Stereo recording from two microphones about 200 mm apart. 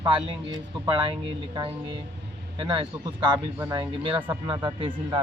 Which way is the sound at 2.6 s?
25° right (ahead or behind).